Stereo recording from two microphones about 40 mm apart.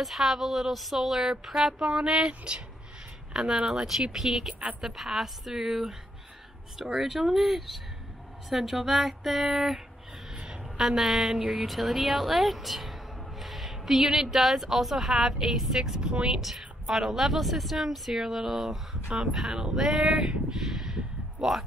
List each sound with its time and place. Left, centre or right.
0.0 s a woman's voice: centre
2.2 s speech: right
3.3 s speech: centre
4.5 s speech: right
4.8 s a woman's voice: centre
10.3 s a sound: right
10.8 s a woman's voice: centre
16.3 s a woman's voice: centre
19.1 s speech: right; by 20.2 s centre
20.5 s a sound: centre